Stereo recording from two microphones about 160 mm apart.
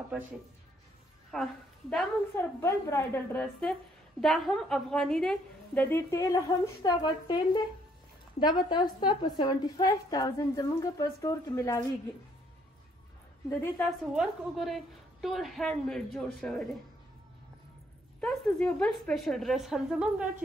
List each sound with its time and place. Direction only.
1.3 s a woman's voice: 5° left (ahead or behind)
2.3 s a woman's voice: 15° left (ahead or behind)
4.2 s a woman's voice: centre (ahead or behind); by 11.8 s 20° left (ahead or behind)
13.5 s a woman's voice: 15° left (ahead or behind)
13.8 s a woman's voice: centre (ahead or behind)
18.2 s a woman's voice: 5° left (ahead or behind)